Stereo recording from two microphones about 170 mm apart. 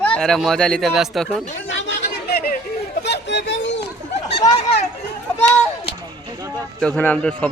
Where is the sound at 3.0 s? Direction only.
90° left.